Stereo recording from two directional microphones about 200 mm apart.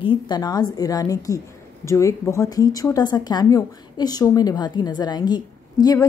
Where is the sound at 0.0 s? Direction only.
25° left (ahead or behind).